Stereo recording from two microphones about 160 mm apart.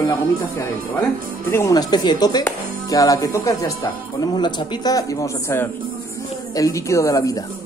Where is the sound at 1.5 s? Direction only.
20° left (ahead or behind).